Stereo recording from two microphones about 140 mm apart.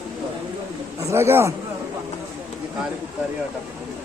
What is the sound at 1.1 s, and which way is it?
Speech, 15° right (ahead or behind).